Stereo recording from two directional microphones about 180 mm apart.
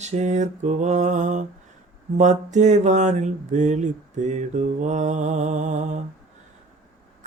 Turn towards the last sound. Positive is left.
turn(degrees=-45)  # may be behind; listen again after turning